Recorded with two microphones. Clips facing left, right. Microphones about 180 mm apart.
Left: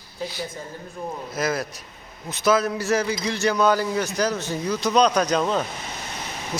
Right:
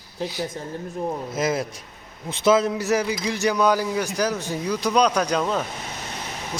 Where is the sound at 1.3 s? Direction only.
25° right (ahead or behind); by 5.7 s centre (ahead or behind).